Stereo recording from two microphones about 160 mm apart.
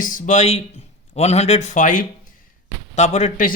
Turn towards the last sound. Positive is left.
turn(degrees=50)  # may be behind; listen again after turning